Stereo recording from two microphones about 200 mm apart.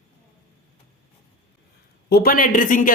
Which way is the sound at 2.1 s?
50° left (ahead or behind).